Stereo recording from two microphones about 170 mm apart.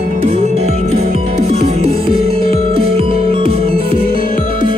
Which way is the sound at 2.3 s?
35° right (ahead or behind).